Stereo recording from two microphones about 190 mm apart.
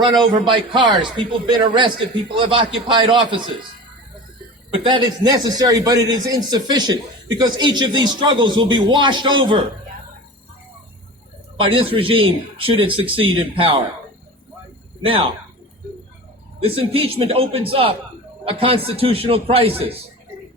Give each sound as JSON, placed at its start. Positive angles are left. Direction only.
{"t": 0.0, "sound": "a man's voice", "side_deg": -25}
{"t": 4.7, "sound": "a man's voice", "side_deg": -25}
{"t": 11.5, "sound": "a man's voice", "side_deg": -30}
{"t": 15.0, "sound": "a man's voice", "side_deg": -30}
{"t": 16.6, "sound": "a man's voice", "side_deg": -30}